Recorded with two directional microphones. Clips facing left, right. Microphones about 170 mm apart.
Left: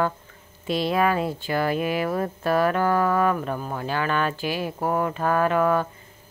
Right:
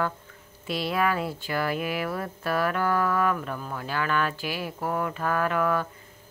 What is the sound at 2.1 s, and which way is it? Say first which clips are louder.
Speech: left 6 dB; 35° left (ahead or behind).